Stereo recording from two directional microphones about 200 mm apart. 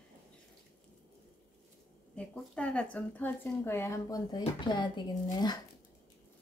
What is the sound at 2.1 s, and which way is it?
A woman's voice, 5° left (ahead or behind).